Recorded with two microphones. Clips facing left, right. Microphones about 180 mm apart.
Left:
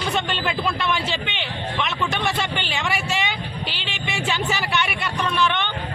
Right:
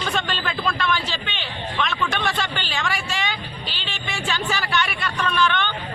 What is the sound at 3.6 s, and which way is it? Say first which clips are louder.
Music: left 3 dB; 70° left (ahead or behind).